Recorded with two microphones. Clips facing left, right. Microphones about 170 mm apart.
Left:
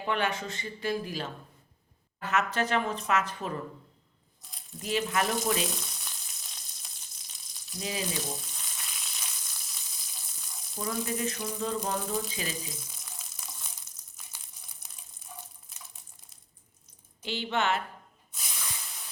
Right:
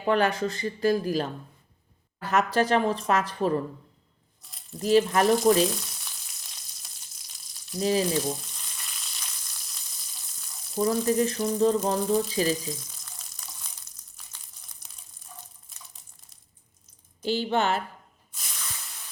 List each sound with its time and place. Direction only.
0.0 s a woman's voice: 35° right (ahead or behind)
4.8 s a woman's voice: 40° right (ahead or behind)
5.7 s frying: centre (ahead or behind)
7.5 s a sound: centre (ahead or behind)
7.8 s a woman's voice: 40° right (ahead or behind)
8.4 s frying: 5° left (ahead or behind)
10.8 s a woman's voice: 40° right (ahead or behind)
12.9 s water: 5° left (ahead or behind)
14.3 s a sound: 5° left (ahead or behind)
17.2 s a woman's voice: 40° right (ahead or behind)
18.3 s hiss: 5° left (ahead or behind)